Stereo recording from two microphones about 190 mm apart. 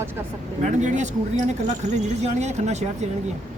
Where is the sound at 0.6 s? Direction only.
40° right (ahead or behind).